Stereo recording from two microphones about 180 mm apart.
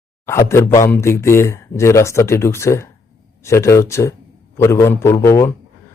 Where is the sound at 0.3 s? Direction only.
15° left (ahead or behind).